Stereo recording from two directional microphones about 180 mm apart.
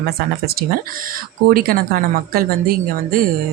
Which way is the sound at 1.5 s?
55° right (ahead or behind).